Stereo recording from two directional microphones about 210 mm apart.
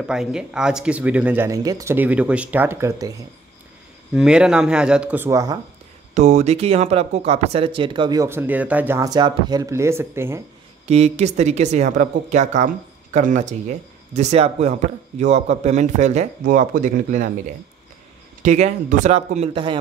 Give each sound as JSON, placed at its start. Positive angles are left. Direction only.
{"t": 0.0, "sound": "speech", "side_deg": -5}
{"t": 4.1, "sound": "speech", "side_deg": -5}
{"t": 6.1, "sound": "speech", "side_deg": -30}
{"t": 10.9, "sound": "speech", "side_deg": -30}
{"t": 18.4, "sound": "speech", "side_deg": -35}